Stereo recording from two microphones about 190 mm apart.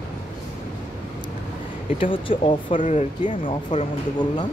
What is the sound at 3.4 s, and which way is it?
Speech, 25° left (ahead or behind).